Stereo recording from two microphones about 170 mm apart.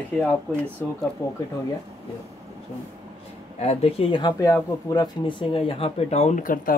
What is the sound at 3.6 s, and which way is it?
Speech, 40° left (ahead or behind).